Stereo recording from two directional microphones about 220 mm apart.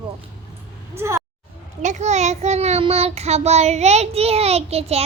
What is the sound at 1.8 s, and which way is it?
A child's voice, 30° right (ahead or behind).